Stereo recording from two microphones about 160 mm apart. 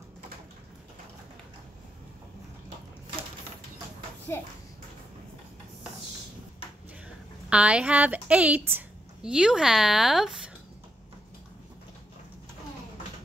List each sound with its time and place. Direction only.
4.3 s a child's voice: 15° left (ahead or behind)
7.4 s a woman's voice: 5° right (ahead or behind)